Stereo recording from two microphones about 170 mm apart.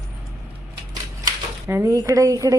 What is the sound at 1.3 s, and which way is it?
Speech, 15° right (ahead or behind).